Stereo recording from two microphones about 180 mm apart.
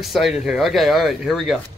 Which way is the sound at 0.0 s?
Centre (ahead or behind).